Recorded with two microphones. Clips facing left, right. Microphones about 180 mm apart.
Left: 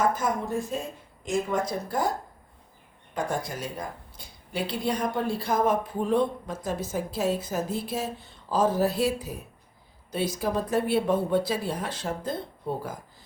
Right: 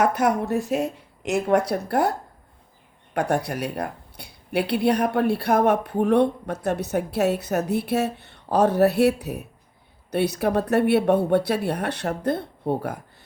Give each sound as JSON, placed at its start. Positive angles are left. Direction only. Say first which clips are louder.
{"t": 0.0, "sound": "speech", "louder": "right 5 dB", "side_deg": -70}
{"t": 3.2, "sound": "speech", "louder": "right 6 dB", "side_deg": -65}